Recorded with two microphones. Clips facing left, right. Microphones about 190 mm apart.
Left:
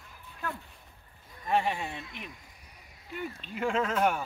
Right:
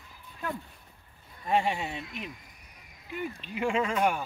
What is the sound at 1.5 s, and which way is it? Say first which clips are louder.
Speech: right 1 dB; 25° right (ahead or behind).